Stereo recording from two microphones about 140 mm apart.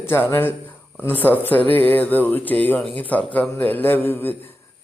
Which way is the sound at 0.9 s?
15° left (ahead or behind).